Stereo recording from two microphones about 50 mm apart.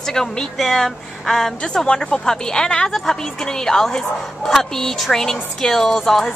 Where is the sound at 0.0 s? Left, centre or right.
Centre.